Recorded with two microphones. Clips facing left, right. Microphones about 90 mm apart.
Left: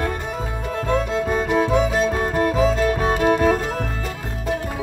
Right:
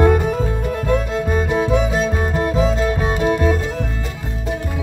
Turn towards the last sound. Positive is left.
turn(degrees=50)  # may be behind; listen again after turning